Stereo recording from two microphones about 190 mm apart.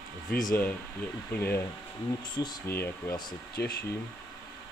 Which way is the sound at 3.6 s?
60° left (ahead or behind).